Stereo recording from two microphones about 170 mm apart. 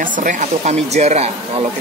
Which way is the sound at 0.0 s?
50° right (ahead or behind).